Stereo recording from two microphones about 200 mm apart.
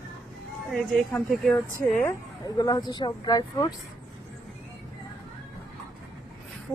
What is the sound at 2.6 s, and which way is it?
Speech, 20° left (ahead or behind).